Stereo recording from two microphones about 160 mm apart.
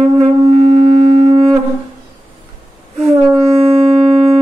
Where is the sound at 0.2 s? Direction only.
40° right (ahead or behind).